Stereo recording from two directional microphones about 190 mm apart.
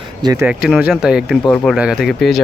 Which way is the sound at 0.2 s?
20° right (ahead or behind).